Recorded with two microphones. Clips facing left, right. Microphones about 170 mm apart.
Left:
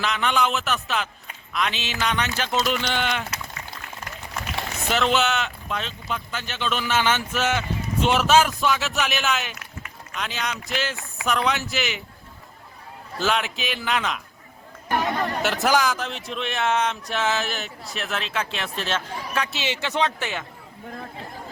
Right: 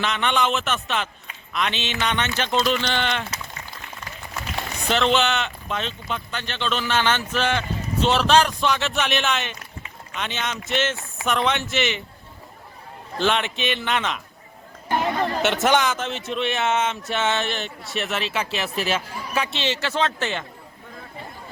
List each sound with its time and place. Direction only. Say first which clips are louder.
0.0 s speech: right 1 dB; centre (ahead or behind)
4.9 s speech: right 2 dB; 5° left (ahead or behind)
13.1 s speech: right 2 dB; 5° left (ahead or behind)
14.8 s chatter: right 1 dB; 25° right (ahead or behind)
15.4 s speech: right 1 dB; centre (ahead or behind)
19.5 s speech: even; 10° left (ahead or behind)